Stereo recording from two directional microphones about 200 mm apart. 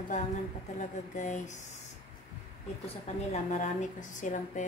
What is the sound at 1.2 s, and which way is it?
Speech, 35° left (ahead or behind).